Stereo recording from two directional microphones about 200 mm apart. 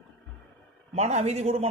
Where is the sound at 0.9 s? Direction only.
35° right (ahead or behind).